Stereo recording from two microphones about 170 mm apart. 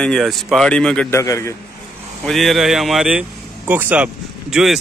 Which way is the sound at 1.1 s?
20° left (ahead or behind).